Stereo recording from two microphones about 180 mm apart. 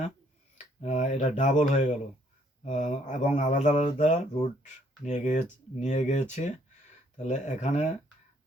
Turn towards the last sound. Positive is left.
turn(degrees=40)  # may be behind; listen again after turning